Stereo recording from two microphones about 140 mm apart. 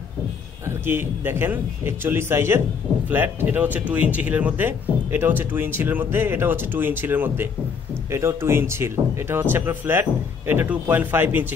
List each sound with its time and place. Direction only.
0.7 s speech: 15° right (ahead or behind)